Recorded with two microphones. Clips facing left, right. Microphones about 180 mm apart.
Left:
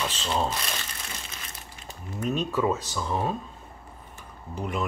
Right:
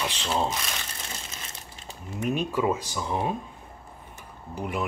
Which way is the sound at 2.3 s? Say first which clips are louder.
Even; 10° right (ahead or behind).